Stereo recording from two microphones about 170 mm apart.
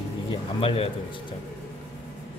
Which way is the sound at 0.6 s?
30° left (ahead or behind).